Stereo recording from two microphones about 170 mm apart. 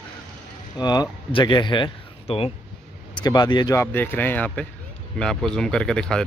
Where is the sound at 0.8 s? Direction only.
25° left (ahead or behind).